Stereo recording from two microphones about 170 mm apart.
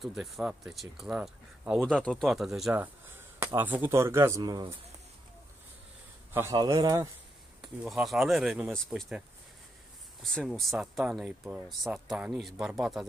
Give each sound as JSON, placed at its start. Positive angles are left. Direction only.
{"t": 0.0, "sound": "speech", "side_deg": 0}
{"t": 6.5, "sound": "speech", "side_deg": -25}
{"t": 7.8, "sound": "speech", "side_deg": 0}
{"t": 10.2, "sound": "speech", "side_deg": 5}